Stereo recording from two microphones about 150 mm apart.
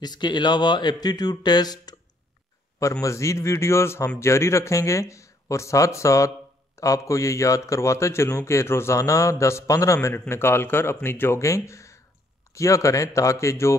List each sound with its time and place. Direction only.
0.0 s speech: 30° left (ahead or behind)